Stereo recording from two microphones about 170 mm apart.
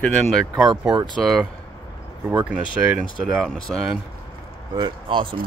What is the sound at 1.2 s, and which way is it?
Speech, centre (ahead or behind).